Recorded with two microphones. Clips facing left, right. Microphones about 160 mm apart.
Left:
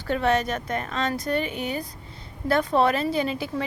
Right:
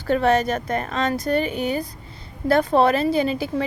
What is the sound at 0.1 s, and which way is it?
A woman's voice, 40° right (ahead or behind).